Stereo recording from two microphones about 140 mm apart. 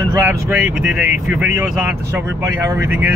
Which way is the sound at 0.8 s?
5° right (ahead or behind).